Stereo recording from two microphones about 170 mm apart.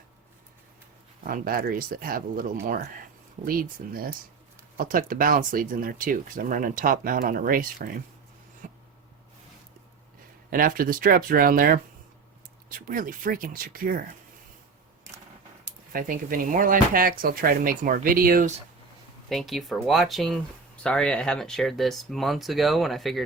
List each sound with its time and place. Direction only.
1.2 s speech: 55° right (ahead or behind)
8.6 s a sound: 50° right (ahead or behind)
10.5 s speech: 55° right (ahead or behind)
15.9 s speech: 55° right (ahead or behind)
19.3 s speech: centre (ahead or behind)